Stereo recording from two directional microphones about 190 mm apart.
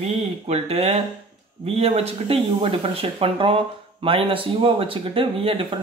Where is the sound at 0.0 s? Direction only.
35° right (ahead or behind).